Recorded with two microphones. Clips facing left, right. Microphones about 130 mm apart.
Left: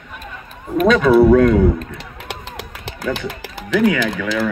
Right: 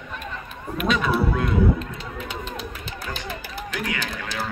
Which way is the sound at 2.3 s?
85° left.